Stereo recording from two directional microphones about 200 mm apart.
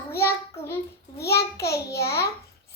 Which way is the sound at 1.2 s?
55° left (ahead or behind).